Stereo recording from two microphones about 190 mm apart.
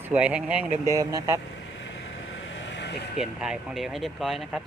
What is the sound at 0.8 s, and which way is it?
Speech, 20° right (ahead or behind).